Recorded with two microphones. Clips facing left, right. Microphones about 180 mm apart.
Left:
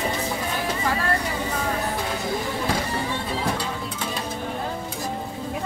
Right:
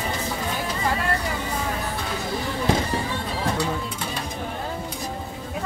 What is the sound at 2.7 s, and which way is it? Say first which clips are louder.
Music: right 5 dB; 20° right (ahead or behind).